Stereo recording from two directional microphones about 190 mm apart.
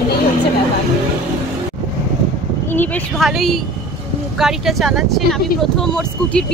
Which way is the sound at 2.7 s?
10° left (ahead or behind).